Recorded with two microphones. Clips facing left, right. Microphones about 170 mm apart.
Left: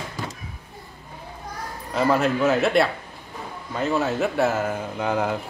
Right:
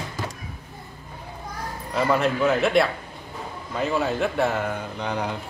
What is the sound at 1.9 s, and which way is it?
A man's voice, centre (ahead or behind).